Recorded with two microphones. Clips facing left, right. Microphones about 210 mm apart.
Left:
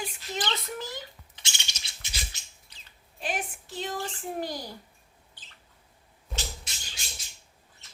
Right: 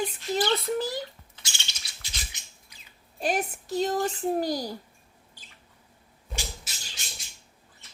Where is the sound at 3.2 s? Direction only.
40° right (ahead or behind).